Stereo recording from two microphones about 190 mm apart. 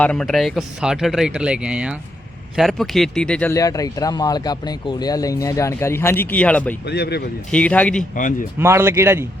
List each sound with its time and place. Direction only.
0.0 s speech: 5° left (ahead or behind)
6.8 s speech: 60° left (ahead or behind)
7.5 s speech: 5° left (ahead or behind)
8.1 s a man's voice: 45° left (ahead or behind)
8.5 s speech: 15° right (ahead or behind)